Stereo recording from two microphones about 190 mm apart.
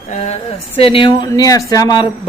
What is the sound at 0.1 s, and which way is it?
Speech, 35° left (ahead or behind).